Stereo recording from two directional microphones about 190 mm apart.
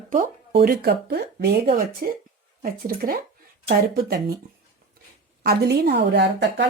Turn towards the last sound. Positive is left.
turn(degrees=-65)  # may be behind; listen again after turning